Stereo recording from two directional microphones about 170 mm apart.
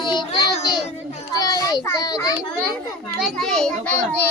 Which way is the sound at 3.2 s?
Centre (ahead or behind).